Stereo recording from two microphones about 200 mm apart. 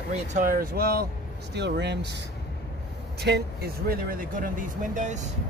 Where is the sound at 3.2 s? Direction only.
55° right (ahead or behind).